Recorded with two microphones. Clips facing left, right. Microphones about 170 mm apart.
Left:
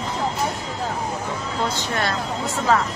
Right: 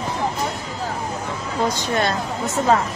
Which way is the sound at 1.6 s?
15° right (ahead or behind).